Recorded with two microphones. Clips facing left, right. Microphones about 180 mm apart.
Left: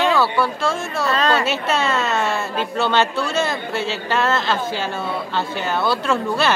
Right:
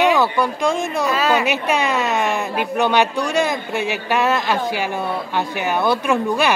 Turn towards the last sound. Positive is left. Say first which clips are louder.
# right 2 dB
turn(degrees=-15)  # may be behind; listen again after turning